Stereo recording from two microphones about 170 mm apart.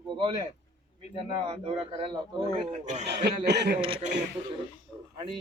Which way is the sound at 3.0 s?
75° right (ahead or behind).